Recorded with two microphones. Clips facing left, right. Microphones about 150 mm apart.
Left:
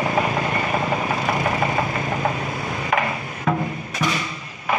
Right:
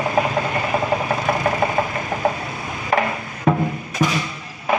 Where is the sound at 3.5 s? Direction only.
30° right (ahead or behind).